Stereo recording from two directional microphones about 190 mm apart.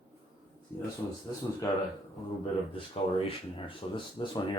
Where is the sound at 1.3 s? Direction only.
15° left (ahead or behind).